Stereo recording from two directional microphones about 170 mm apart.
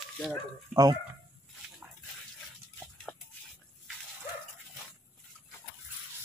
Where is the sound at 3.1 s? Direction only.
5° left (ahead or behind).